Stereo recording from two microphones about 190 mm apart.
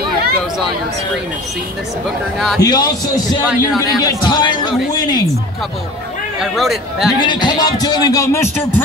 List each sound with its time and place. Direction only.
2.3 s a man's voice: centre (ahead or behind)
2.6 s speech: 20° left (ahead or behind)
3.4 s a man's voice: centre (ahead or behind)
4.3 s speech: 20° left (ahead or behind)
6.4 s a man's voice: centre (ahead or behind)
7.2 s speech: 25° left (ahead or behind)